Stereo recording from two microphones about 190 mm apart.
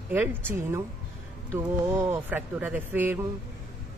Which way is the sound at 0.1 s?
10° right (ahead or behind).